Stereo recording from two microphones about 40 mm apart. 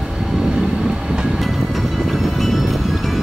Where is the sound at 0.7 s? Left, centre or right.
Centre.